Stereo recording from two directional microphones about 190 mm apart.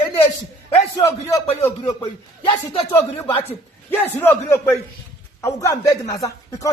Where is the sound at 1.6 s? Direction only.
15° left (ahead or behind).